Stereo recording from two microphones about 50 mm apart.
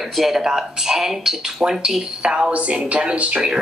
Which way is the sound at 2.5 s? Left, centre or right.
Right.